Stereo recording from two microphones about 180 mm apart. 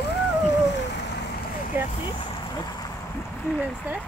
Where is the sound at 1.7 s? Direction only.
10° right (ahead or behind).